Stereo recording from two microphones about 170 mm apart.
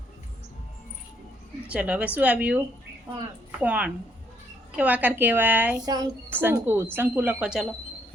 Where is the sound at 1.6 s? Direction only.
5° right (ahead or behind).